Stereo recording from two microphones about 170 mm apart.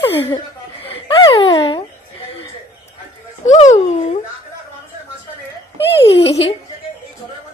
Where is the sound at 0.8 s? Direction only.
35° left (ahead or behind).